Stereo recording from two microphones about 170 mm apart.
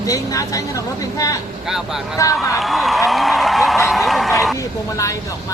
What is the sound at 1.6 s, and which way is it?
Speech, centre (ahead or behind).